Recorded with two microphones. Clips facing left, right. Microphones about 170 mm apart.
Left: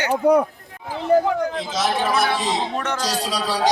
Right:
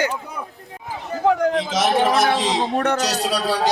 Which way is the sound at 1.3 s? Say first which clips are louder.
Right 4 dB; 85° right.